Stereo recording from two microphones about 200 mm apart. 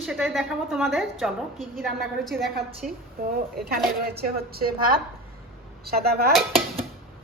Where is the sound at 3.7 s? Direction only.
50° right (ahead or behind).